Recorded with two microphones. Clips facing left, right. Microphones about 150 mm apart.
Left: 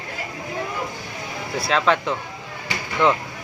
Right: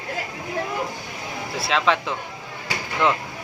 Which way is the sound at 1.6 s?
Centre (ahead or behind).